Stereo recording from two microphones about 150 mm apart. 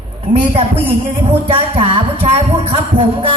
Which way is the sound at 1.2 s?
35° right (ahead or behind).